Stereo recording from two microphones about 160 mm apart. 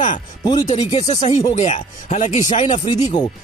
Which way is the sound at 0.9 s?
45° left (ahead or behind).